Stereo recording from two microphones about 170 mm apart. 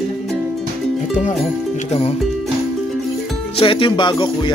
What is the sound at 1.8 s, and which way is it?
Speech, 35° left (ahead or behind).